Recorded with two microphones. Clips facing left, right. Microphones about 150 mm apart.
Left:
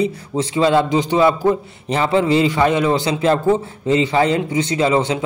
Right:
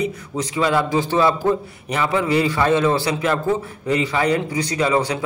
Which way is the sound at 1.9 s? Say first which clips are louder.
Left 4 dB; 30° left (ahead or behind).